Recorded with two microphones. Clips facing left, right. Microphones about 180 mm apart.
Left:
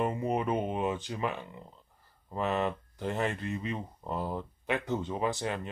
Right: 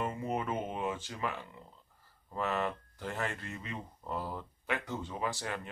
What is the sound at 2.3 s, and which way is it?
Speech, 20° left (ahead or behind).